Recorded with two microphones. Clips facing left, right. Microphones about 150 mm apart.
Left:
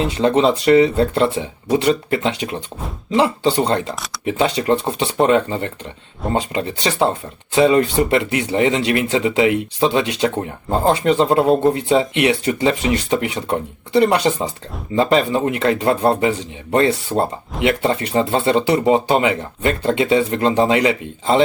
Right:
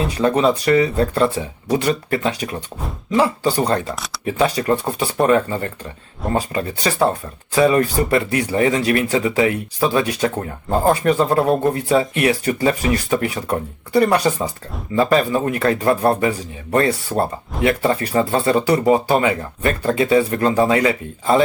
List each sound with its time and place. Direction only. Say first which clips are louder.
0.0 s speech: left 1 dB; 25° left (ahead or behind)